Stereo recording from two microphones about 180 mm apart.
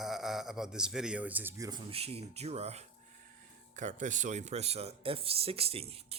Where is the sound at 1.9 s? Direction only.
35° right (ahead or behind).